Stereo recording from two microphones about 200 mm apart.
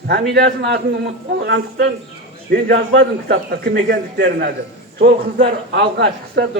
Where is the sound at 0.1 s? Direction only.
55° right (ahead or behind).